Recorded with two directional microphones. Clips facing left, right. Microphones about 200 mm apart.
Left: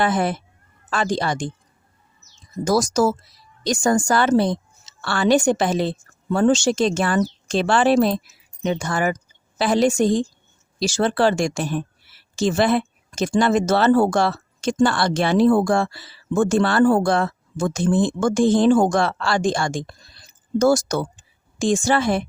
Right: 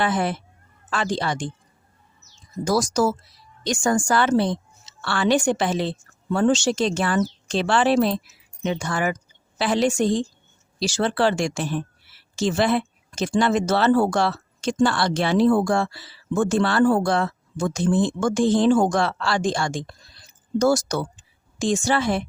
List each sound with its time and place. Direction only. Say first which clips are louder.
0.0 s a woman's voice: left 2 dB; 45° left (ahead or behind)
2.6 s a woman's voice: left 2 dB; 45° left (ahead or behind)